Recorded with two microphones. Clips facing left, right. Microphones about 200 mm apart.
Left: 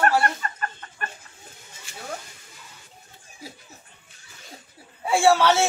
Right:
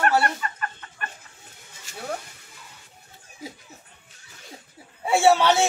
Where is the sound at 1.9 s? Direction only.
40° right (ahead or behind).